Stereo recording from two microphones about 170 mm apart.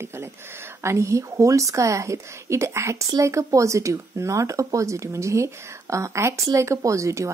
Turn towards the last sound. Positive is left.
turn(degrees=-15)  # may be behind; listen again after turning